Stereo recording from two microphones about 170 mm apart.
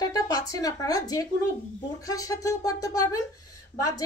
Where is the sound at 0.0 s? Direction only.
20° left (ahead or behind).